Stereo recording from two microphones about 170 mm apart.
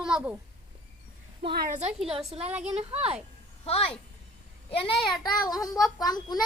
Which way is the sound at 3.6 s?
35° left (ahead or behind).